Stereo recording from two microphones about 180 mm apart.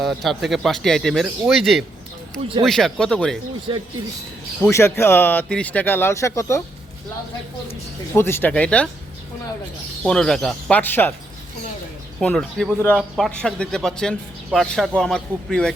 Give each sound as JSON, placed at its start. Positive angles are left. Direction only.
{"t": 0.0, "sound": "speech", "side_deg": 0}
{"t": 3.7, "sound": "speech", "side_deg": -30}
{"t": 4.6, "sound": "speech", "side_deg": 15}
{"t": 8.1, "sound": "speech", "side_deg": 15}
{"t": 10.0, "sound": "speech", "side_deg": 5}
{"t": 12.2, "sound": "speech", "side_deg": 5}